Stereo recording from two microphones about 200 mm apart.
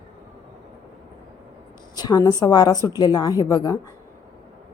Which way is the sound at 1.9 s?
20° left (ahead or behind).